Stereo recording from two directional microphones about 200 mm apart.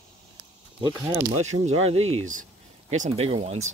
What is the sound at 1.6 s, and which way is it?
Speech, 30° right (ahead or behind).